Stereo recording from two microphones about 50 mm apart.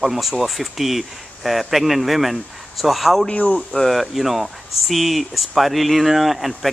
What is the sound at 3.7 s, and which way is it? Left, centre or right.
A man's voice, centre.